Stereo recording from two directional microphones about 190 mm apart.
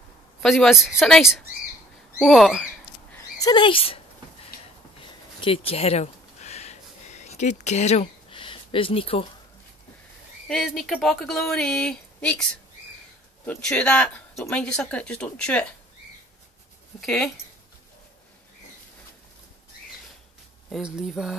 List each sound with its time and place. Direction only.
0.4 s speech: centre (ahead or behind)
3.3 s speech: 20° left (ahead or behind)
5.4 s a sound: 30° left (ahead or behind)
10.5 s speech: centre (ahead or behind)
13.5 s speech: 5° left (ahead or behind)
17.0 s speech: 5° left (ahead or behind)
20.7 s speech: centre (ahead or behind)